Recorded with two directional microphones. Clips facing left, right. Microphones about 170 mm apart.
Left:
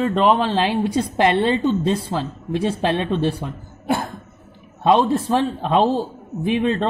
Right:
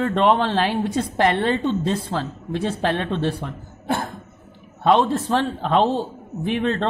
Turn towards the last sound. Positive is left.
turn(degrees=10)  # may be behind; listen again after turning